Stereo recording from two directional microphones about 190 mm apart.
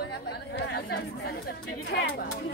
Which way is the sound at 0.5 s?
60° left (ahead or behind).